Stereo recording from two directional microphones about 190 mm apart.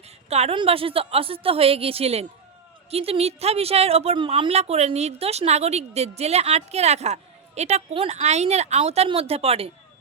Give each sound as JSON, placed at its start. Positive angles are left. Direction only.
{"t": 0.3, "sound": "speech", "side_deg": -35}